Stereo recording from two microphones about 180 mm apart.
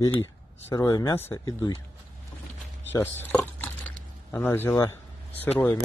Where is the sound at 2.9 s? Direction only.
10° left (ahead or behind).